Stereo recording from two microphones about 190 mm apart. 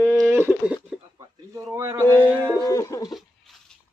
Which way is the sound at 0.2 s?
10° right (ahead or behind).